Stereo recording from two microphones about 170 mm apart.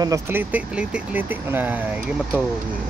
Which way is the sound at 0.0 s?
15° right (ahead or behind).